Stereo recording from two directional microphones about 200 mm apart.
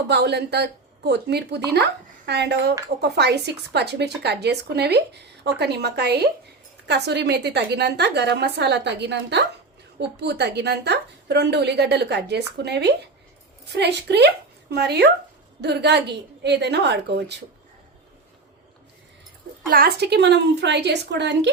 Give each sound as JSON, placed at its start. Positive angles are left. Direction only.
{"t": 0.1, "sound": "speech", "side_deg": -55}
{"t": 19.7, "sound": "speech", "side_deg": -50}